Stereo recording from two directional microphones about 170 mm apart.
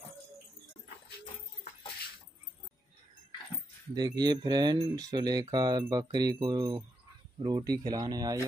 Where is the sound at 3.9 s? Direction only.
25° right (ahead or behind).